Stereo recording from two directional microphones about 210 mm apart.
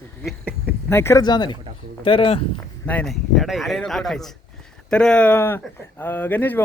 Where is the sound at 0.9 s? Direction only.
10° left (ahead or behind).